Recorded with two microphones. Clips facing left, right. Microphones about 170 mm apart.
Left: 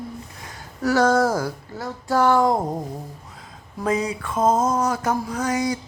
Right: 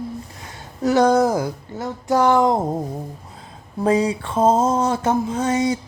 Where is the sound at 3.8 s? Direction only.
30° right (ahead or behind).